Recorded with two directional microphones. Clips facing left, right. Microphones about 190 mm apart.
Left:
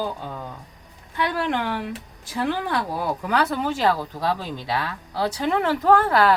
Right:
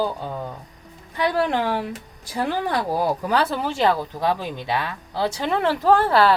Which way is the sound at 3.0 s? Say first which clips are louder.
Right 2 dB; 30° right (ahead or behind).